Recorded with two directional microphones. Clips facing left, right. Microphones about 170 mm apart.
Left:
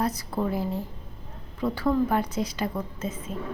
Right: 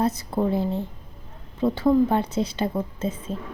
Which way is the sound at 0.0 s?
25° right (ahead or behind).